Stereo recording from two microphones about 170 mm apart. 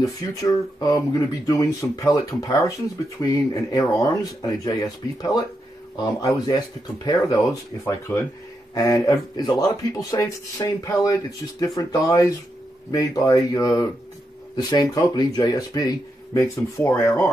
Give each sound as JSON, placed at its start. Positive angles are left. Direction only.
{"t": 0.0, "sound": "speech", "side_deg": 20}